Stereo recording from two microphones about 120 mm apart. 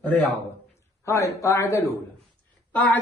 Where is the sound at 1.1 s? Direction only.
25° left (ahead or behind).